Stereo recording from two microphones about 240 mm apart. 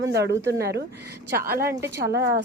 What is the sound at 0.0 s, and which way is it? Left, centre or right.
A woman's voice, right.